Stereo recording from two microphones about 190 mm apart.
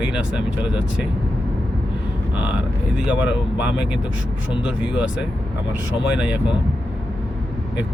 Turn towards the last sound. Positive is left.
turn(degrees=-5)  # may be behind; listen again after turning